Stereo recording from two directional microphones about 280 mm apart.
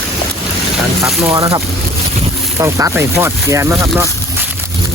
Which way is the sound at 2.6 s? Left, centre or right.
Centre.